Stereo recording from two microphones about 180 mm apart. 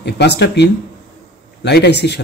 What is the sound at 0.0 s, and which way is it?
Speech, 70° left (ahead or behind).